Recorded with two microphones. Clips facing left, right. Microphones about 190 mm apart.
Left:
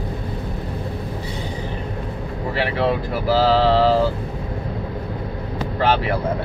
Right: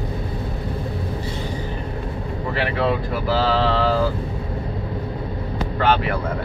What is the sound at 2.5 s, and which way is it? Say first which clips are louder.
Speech: left 1 dB; 35° left (ahead or behind).